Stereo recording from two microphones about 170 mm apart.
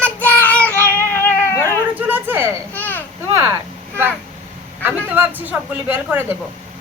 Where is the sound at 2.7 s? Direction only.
10° left (ahead or behind).